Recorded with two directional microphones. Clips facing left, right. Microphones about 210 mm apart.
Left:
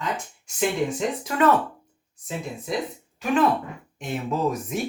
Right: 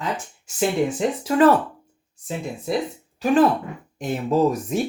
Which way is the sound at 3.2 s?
35° right (ahead or behind).